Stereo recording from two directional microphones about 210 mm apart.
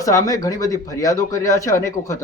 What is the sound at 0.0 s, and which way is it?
Speech, 15° left (ahead or behind).